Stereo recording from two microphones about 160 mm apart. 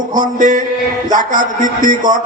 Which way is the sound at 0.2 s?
55° right (ahead or behind).